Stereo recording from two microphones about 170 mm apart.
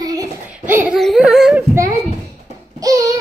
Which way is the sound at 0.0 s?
20° right (ahead or behind).